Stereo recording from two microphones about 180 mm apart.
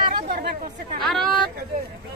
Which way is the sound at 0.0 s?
55° right (ahead or behind).